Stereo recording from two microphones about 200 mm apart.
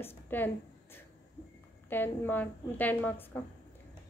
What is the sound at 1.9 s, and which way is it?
A woman's voice, 10° left (ahead or behind).